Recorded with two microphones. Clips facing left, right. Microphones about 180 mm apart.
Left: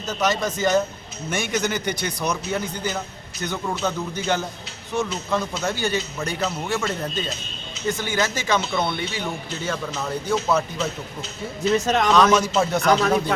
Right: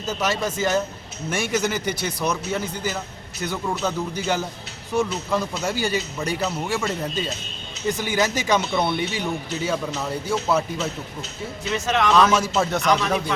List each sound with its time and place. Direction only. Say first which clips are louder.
0.0 s a man's voice: left 1 dB; 5° right (ahead or behind)
11.7 s speech: left 2 dB; 40° left (ahead or behind)
12.1 s speech: left 1 dB; 5° right (ahead or behind)